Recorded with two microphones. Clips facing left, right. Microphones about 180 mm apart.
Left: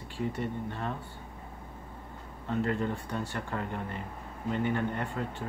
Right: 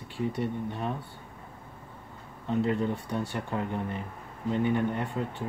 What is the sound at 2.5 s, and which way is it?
Speech, 15° right (ahead or behind).